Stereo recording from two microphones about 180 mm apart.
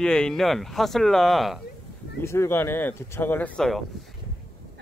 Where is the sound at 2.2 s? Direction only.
15° left (ahead or behind).